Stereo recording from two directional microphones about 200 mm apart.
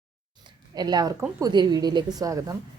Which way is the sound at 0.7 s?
20° right (ahead or behind).